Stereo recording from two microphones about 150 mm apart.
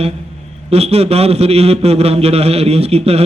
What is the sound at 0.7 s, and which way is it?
A man's voice, 40° right (ahead or behind).